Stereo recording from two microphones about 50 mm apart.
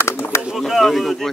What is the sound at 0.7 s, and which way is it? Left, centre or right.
Speech, centre.